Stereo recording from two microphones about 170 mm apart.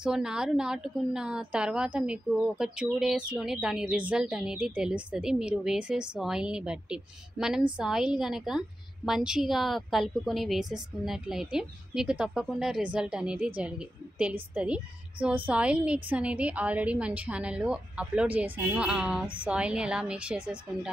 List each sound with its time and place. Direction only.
0.0 s a woman's voice: 5° right (ahead or behind)